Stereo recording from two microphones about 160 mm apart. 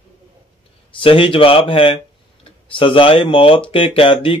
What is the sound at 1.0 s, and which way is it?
Speech, 35° left (ahead or behind).